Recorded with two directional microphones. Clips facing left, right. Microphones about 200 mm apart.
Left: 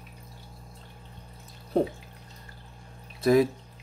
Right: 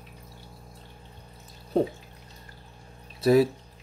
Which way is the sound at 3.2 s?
30° right (ahead or behind).